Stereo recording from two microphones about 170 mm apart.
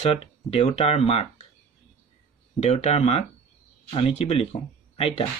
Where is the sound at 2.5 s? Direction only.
40° left (ahead or behind).